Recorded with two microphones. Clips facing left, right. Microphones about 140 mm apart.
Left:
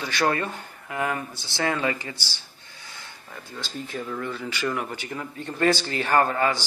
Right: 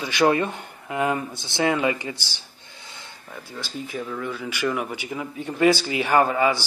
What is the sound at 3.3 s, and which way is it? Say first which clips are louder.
Speech: right 2 dB; 5° right (ahead or behind).